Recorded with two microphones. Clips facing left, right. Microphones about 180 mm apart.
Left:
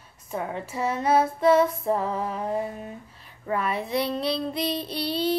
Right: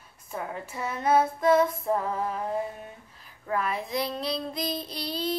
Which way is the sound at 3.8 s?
70° left (ahead or behind).